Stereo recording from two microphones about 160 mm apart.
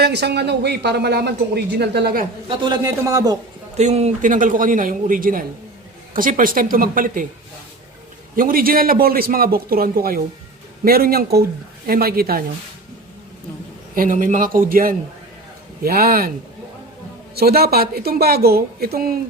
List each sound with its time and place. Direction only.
0.0 s speech: 90° right
2.5 s a man's voice: 25° right (ahead or behind)
3.8 s a man's voice: 45° right (ahead or behind); by 7.3 s 60° right (ahead or behind)
8.4 s a man's voice: 65° right (ahead or behind)
13.9 s a man's voice: 60° right (ahead or behind)
17.3 s a woman's voice: 75° right (ahead or behind)